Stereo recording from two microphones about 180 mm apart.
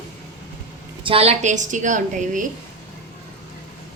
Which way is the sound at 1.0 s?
35° right (ahead or behind).